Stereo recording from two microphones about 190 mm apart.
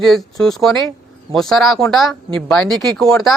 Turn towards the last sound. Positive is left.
turn(degrees=0)  # may be behind; listen again after turning